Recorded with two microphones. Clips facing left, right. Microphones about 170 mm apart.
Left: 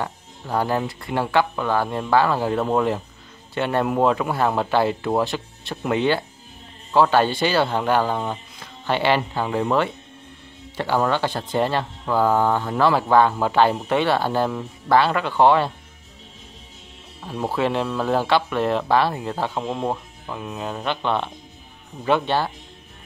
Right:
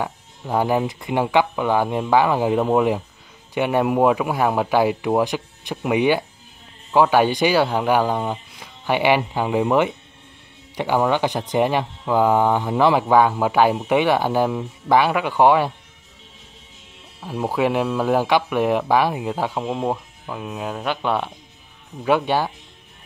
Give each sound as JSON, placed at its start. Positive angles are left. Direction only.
{"t": 0.0, "sound": "speech", "side_deg": -15}
{"t": 17.2, "sound": "speech", "side_deg": -5}